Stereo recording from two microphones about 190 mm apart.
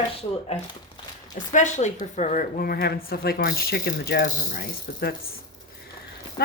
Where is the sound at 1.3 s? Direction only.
40° left (ahead or behind).